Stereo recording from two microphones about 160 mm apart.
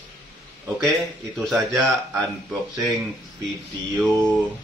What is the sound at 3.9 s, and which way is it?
Speech, centre (ahead or behind).